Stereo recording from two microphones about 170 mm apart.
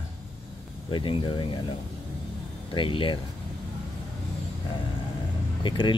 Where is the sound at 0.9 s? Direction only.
30° left (ahead or behind).